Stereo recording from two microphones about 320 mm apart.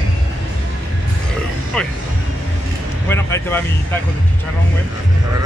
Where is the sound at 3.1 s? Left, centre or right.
Centre.